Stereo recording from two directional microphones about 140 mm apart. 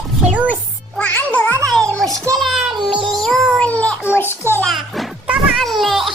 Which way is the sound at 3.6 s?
10° left (ahead or behind).